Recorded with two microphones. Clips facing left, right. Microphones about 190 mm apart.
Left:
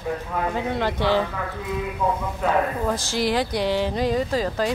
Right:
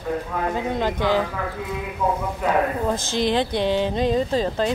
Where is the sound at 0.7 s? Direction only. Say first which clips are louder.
Even; 15° right (ahead or behind).